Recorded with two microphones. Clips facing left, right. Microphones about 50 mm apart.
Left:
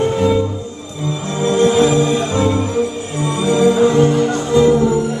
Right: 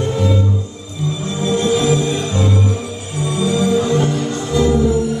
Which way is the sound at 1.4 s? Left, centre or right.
Left.